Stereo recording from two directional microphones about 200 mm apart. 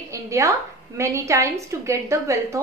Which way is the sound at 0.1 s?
15° right (ahead or behind).